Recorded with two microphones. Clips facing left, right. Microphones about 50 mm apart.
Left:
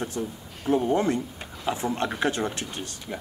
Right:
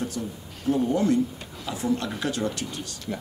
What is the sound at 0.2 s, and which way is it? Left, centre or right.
Speech, left.